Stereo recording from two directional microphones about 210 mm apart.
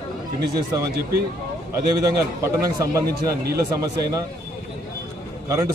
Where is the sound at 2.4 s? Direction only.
15° right (ahead or behind).